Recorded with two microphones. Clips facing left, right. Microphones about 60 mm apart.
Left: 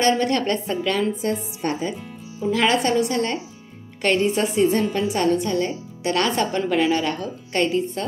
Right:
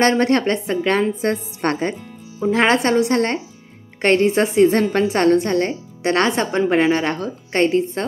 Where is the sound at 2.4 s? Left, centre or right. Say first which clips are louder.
Right 3 dB; right.